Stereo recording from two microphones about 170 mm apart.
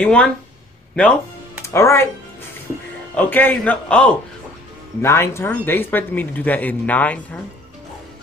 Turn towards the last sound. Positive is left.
turn(degrees=10)  # may be behind; listen again after turning